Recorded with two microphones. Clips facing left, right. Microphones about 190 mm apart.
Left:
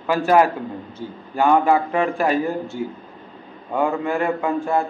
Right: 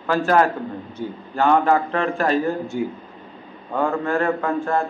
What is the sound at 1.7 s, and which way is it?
Speech, 15° left (ahead or behind).